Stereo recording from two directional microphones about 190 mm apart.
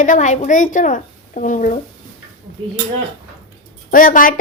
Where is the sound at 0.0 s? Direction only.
40° left (ahead or behind).